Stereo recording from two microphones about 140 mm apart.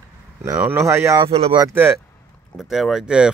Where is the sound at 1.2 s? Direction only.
45° right (ahead or behind).